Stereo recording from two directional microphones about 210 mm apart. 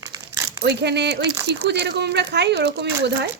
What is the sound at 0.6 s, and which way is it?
Speech, 50° right (ahead or behind).